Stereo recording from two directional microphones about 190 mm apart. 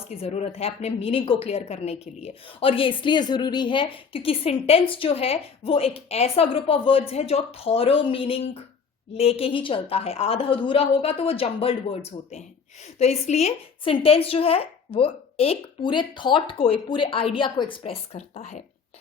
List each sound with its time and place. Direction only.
0.1 s a man's voice: 35° left (ahead or behind)